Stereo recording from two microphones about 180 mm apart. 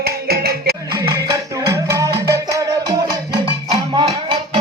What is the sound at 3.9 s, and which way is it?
Music, 25° right (ahead or behind).